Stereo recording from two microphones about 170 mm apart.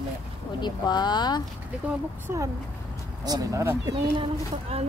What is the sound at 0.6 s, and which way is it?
Speech, 25° left (ahead or behind).